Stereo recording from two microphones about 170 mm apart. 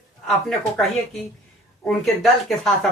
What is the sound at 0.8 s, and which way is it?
Speech, centre (ahead or behind).